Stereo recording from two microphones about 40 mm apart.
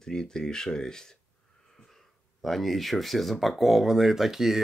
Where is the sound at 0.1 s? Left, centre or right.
Centre.